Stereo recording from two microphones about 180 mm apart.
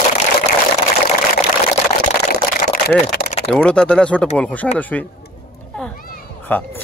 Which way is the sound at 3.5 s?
5° left (ahead or behind).